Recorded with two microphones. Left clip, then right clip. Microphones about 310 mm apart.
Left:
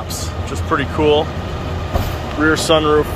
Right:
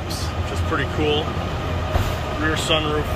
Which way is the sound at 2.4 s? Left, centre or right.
Centre.